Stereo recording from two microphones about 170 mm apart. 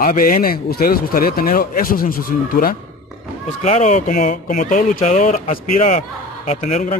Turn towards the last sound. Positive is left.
turn(degrees=40)  # may be behind; listen again after turning